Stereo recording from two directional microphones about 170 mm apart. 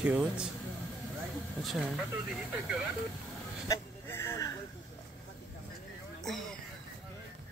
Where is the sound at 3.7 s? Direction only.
15° left (ahead or behind).